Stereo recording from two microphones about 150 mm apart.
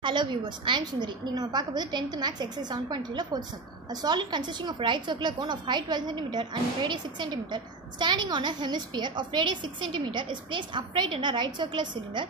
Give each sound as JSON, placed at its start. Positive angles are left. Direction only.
{"t": 0.0, "sound": "a woman's voice", "side_deg": -30}